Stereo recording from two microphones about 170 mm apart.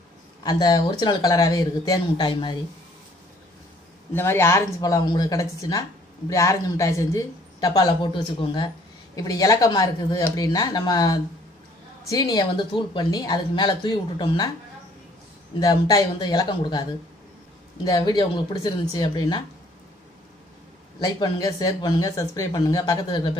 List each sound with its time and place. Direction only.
0.4 s speech: 25° left (ahead or behind)
4.1 s speech: 15° left (ahead or behind)
15.6 s speech: 20° left (ahead or behind)
17.8 s speech: 20° left (ahead or behind)
21.0 s speech: 20° left (ahead or behind)